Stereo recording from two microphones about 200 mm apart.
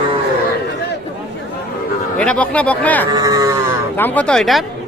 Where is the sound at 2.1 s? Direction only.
5° left (ahead or behind).